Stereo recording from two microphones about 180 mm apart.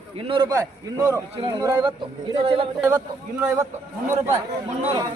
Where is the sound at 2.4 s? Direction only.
30° right (ahead or behind).